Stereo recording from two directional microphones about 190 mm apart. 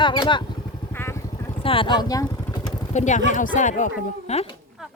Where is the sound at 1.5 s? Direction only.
30° left (ahead or behind).